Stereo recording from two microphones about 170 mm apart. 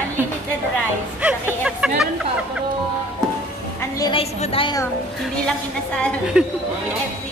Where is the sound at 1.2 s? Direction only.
5° right (ahead or behind).